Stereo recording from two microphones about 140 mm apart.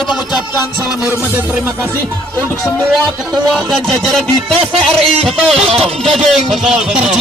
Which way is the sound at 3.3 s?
Centre (ahead or behind).